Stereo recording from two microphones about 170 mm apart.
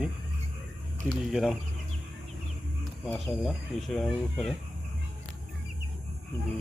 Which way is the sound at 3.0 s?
5° left (ahead or behind).